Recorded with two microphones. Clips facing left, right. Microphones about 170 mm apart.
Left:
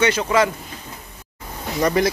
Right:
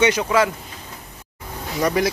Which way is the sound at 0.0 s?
15° right (ahead or behind).